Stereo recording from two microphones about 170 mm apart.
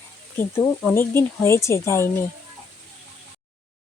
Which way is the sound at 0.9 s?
15° left (ahead or behind).